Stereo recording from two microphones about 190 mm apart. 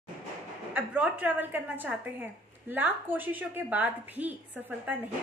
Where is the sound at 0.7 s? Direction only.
10° right (ahead or behind).